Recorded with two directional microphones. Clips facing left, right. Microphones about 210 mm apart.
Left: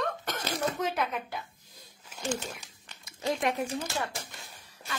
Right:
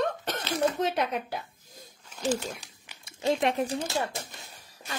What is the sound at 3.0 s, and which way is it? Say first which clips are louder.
Speech: right 4 dB; 25° right (ahead or behind).